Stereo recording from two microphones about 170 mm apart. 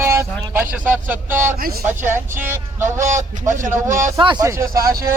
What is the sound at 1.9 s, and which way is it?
A man's voice, 15° right (ahead or behind).